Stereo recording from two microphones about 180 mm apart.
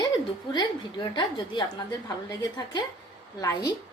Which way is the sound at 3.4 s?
20° left (ahead or behind).